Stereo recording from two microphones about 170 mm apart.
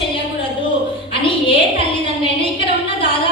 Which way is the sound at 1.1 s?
30° left (ahead or behind).